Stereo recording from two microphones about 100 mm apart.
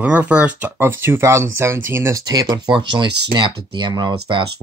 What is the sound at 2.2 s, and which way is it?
Speech, 40° right (ahead or behind).